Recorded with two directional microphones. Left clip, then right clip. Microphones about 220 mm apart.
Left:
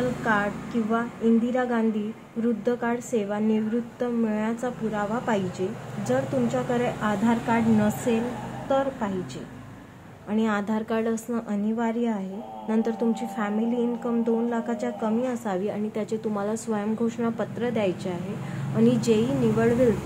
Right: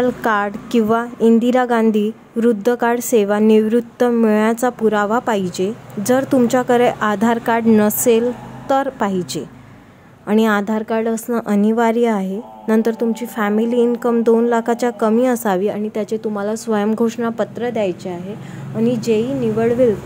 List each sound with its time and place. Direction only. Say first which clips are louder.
0.2 s a woman's voice: right 7 dB; 45° right (ahead or behind); by 19.9 s 15° right (ahead or behind)